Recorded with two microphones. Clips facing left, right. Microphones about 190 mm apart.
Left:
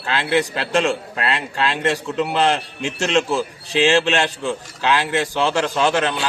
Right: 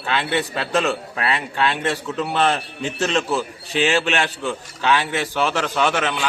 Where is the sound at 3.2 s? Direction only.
30° left (ahead or behind).